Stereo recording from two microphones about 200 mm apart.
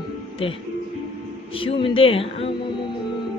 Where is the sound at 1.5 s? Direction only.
25° left (ahead or behind).